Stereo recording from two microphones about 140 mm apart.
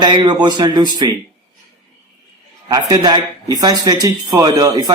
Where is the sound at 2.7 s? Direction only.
30° right (ahead or behind).